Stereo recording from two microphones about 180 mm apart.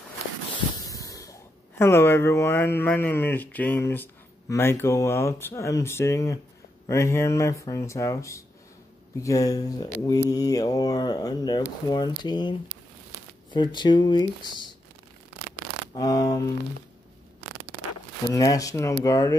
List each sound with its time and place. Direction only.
0.8 s a sound: 20° left (ahead or behind)
1.8 s speech: 15° left (ahead or behind)
15.9 s speech: 20° left (ahead or behind)
18.3 s speech: 20° left (ahead or behind)